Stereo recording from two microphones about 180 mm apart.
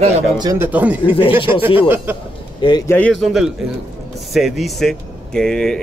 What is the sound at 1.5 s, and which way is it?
Speech, 10° right (ahead or behind).